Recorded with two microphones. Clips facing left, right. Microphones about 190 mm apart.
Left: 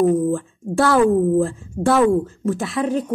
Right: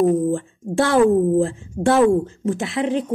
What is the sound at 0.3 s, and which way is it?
A woman's voice, 20° right (ahead or behind).